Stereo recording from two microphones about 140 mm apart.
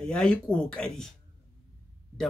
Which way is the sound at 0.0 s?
5° left (ahead or behind).